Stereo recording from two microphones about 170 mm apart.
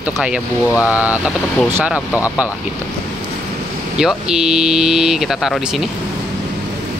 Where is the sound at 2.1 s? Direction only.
20° left (ahead or behind).